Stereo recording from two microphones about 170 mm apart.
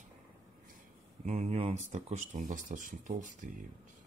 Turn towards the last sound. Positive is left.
turn(degrees=-50)  # may be behind; listen again after turning